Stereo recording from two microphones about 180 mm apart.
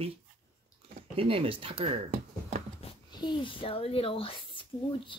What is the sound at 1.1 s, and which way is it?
Speech, 30° right (ahead or behind).